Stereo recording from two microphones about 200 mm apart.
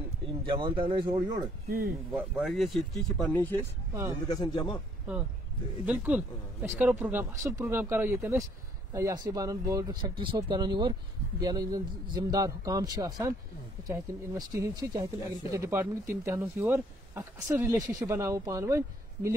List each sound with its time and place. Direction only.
0.5 s speech: 25° right (ahead or behind)
1.7 s speech: 50° right (ahead or behind)
2.1 s speech: 5° right (ahead or behind)
4.3 s a man's voice: 20° left (ahead or behind)
5.9 s speech: 10° right (ahead or behind)